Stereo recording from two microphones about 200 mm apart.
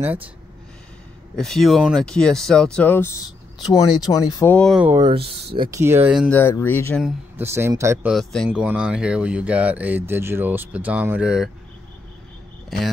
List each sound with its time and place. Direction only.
0.0 s speech: 10° right (ahead or behind)
1.3 s speech: centre (ahead or behind)
4.6 s speech: centre (ahead or behind)
5.0 s speech: 30° right (ahead or behind)
5.7 s speech: 15° right (ahead or behind)
6.1 s speech: 5° left (ahead or behind)
7.0 s speech: centre (ahead or behind)
7.4 s speech: 15° right (ahead or behind)
8.1 s speech: centre (ahead or behind)
12.6 s cricket: centre (ahead or behind)